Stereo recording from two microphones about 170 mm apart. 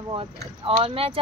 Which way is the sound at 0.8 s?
30° right (ahead or behind).